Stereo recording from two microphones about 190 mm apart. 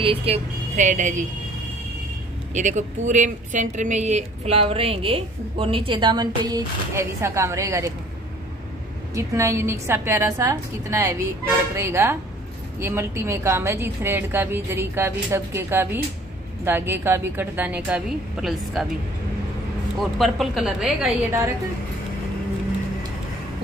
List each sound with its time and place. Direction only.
0.0 s speech: 30° right (ahead or behind)
2.5 s speech: 40° right (ahead or behind); by 7.9 s 15° right (ahead or behind)
9.1 s a woman's voice: 15° right (ahead or behind)
20.0 s a woman's voice: centre (ahead or behind)